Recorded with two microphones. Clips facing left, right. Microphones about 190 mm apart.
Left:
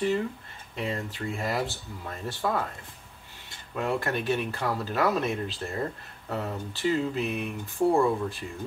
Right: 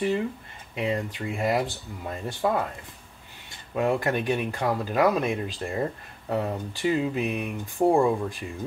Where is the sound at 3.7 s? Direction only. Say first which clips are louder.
Right 4 dB; 15° right (ahead or behind).